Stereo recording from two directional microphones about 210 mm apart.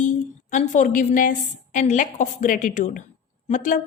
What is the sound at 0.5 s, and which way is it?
A woman's voice, 35° left (ahead or behind).